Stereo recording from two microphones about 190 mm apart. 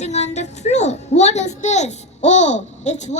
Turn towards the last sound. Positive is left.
turn(degrees=40)  # may be behind; listen again after turning